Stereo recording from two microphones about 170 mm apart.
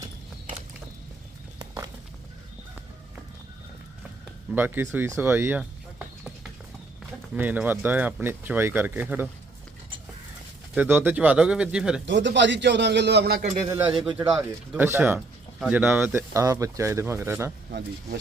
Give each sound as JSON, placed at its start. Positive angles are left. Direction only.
{"t": 1.5, "sound": "a sound", "side_deg": -25}
{"t": 4.5, "sound": "speech", "side_deg": -10}
{"t": 7.3, "sound": "speech", "side_deg": -10}
{"t": 10.8, "sound": "speech", "side_deg": -10}
{"t": 12.0, "sound": "a man's voice", "side_deg": -90}
{"t": 13.7, "sound": "speech", "side_deg": -15}
{"t": 14.3, "sound": "speech", "side_deg": -5}
{"t": 17.7, "sound": "speech", "side_deg": -70}